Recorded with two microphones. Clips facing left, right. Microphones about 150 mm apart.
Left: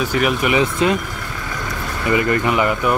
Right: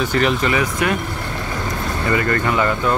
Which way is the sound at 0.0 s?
5° left (ahead or behind).